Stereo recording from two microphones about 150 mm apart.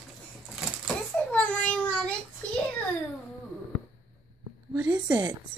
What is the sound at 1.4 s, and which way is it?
Child singing, 10° left (ahead or behind).